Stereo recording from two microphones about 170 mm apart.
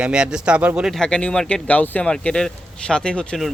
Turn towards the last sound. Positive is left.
turn(degrees=5)  # may be behind; listen again after turning